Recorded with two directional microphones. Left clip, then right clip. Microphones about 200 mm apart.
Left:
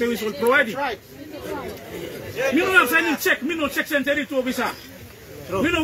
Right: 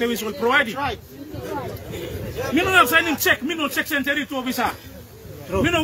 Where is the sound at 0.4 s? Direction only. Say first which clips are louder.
Even; 25° right (ahead or behind).